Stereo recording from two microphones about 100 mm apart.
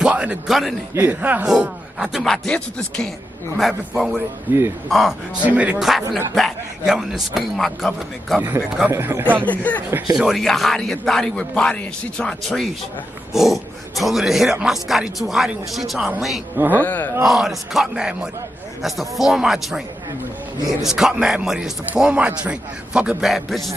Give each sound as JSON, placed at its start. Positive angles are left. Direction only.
{"t": 0.0, "sound": "a man's voice", "side_deg": -10}
{"t": 2.2, "sound": "speech", "side_deg": 5}
{"t": 3.5, "sound": "speech", "side_deg": -5}
{"t": 4.5, "sound": "speech", "side_deg": -20}
{"t": 4.8, "sound": "speech", "side_deg": 0}
{"t": 5.5, "sound": "a man's voice", "side_deg": -15}
{"t": 6.3, "sound": "speech", "side_deg": 0}
{"t": 8.4, "sound": "speech", "side_deg": -20}
{"t": 9.5, "sound": "speech", "side_deg": 15}
{"t": 10.1, "sound": "speech", "side_deg": 0}
{"t": 16.7, "sound": "speech", "side_deg": 15}
{"t": 17.2, "sound": "a man's voice", "side_deg": 0}